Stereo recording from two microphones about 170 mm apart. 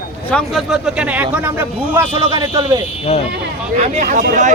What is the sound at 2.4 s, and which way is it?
Speech, 25° right (ahead or behind).